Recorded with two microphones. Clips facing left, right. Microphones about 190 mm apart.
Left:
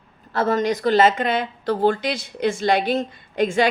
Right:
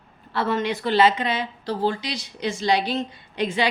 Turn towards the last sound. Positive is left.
turn(degrees=50)  # may be behind; listen again after turning